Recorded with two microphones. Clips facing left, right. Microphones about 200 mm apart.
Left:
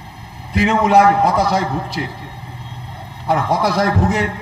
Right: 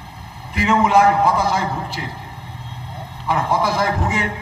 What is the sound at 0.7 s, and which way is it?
Speech, 40° left (ahead or behind).